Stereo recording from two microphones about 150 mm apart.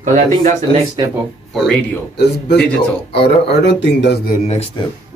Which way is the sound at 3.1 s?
90° left.